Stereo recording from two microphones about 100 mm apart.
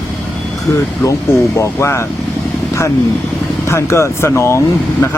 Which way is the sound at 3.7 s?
30° left (ahead or behind).